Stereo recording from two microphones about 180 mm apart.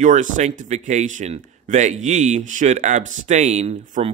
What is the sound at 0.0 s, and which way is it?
Speech, 40° right (ahead or behind).